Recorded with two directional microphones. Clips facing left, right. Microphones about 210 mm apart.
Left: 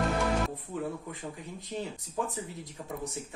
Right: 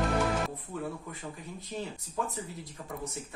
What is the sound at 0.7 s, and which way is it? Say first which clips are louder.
Speech: left 2 dB; 20° left (ahead or behind).